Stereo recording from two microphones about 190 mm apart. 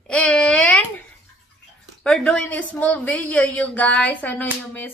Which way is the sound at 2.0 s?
5° left (ahead or behind).